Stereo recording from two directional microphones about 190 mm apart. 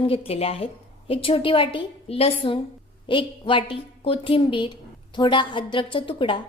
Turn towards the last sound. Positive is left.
turn(degrees=25)  # may be behind; listen again after turning